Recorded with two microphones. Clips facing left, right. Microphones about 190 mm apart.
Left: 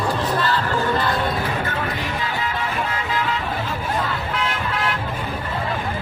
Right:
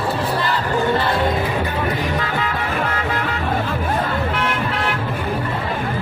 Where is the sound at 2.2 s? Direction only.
55° right (ahead or behind).